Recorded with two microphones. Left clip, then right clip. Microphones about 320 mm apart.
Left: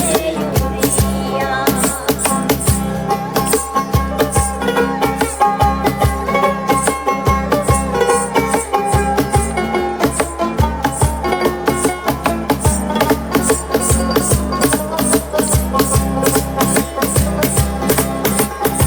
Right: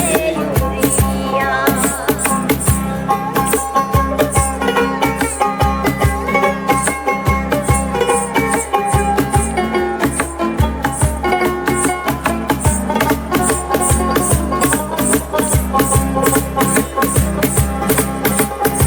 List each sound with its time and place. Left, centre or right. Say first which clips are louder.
1.6 s music: right 1 dB; centre
4.6 s music: even; centre
7.9 s music: left 1 dB; centre
11.6 s music: even; centre